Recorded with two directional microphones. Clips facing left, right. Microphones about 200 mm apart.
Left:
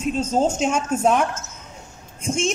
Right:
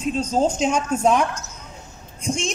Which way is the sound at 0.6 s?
5° left (ahead or behind).